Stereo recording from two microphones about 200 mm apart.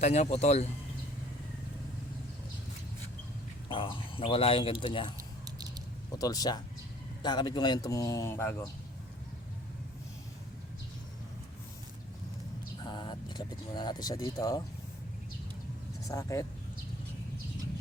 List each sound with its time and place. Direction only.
0.0 s speech: 35° left (ahead or behind)
3.7 s speech: 25° left (ahead or behind)
5.5 s mouse: 20° right (ahead or behind)
6.1 s speech: 20° left (ahead or behind)
12.8 s speech: 25° left (ahead or behind)
16.0 s speech: 15° left (ahead or behind)